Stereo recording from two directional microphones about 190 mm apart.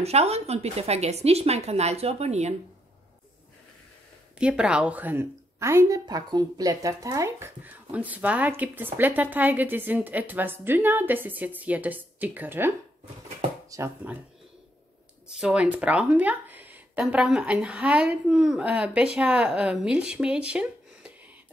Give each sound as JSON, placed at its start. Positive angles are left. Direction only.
{"t": 0.0, "sound": "speech", "side_deg": -35}
{"t": 4.4, "sound": "a woman's voice", "side_deg": -5}
{"t": 15.2, "sound": "speech", "side_deg": -5}